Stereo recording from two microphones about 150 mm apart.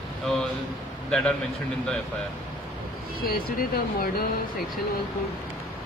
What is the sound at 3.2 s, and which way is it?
Speech, 80° left.